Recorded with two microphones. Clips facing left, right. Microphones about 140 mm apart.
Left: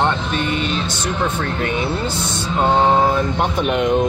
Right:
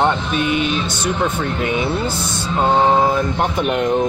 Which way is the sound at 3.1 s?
Centre (ahead or behind).